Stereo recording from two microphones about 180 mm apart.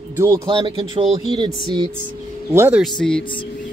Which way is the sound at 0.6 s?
30° right (ahead or behind).